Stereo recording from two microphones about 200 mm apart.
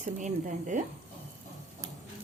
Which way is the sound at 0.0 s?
40° right (ahead or behind).